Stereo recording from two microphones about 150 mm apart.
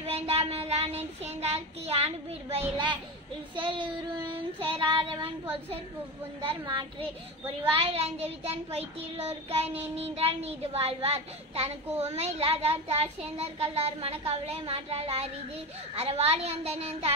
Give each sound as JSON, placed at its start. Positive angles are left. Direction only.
{"t": 0.0, "sound": "child singing", "side_deg": -45}
{"t": 3.5, "sound": "child singing", "side_deg": -35}
{"t": 7.7, "sound": "child singing", "side_deg": -40}